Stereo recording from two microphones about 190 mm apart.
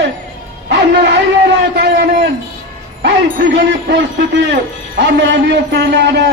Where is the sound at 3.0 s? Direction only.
60° right (ahead or behind).